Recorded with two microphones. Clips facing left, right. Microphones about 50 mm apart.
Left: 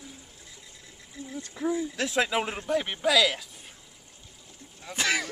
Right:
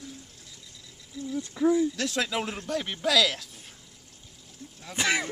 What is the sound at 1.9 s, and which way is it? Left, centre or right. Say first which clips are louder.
Speech: left 3 dB; centre.